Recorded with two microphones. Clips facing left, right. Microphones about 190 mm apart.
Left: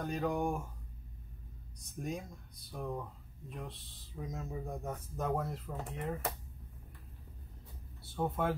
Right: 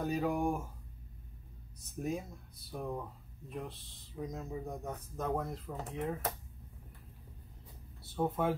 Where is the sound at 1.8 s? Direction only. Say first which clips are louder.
Right 3 dB; 5° right (ahead or behind).